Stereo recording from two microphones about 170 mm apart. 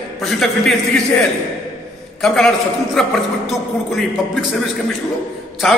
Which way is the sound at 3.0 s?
Centre (ahead or behind).